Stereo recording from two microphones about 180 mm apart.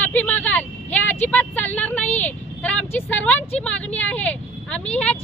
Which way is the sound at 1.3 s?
10° left (ahead or behind).